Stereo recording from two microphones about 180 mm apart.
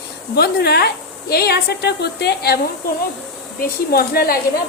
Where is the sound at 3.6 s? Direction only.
60° left (ahead or behind).